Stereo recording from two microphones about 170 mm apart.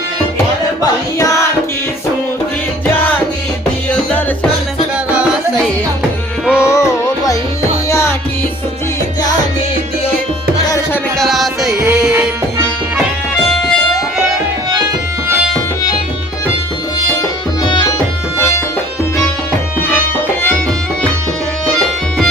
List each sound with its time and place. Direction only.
0.8 s music: 20° left (ahead or behind)
6.4 s music: 5° right (ahead or behind)
6.7 s music: 20° left (ahead or behind)
11.2 s music: centre (ahead or behind)